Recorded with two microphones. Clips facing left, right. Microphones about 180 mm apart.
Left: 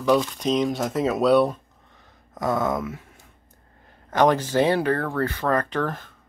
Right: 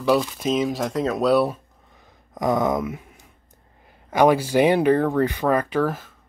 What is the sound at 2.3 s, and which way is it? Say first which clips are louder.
Speech: right 3 dB; 15° right (ahead or behind).